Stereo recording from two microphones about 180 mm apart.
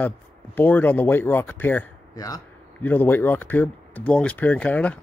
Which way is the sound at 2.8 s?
10° left (ahead or behind).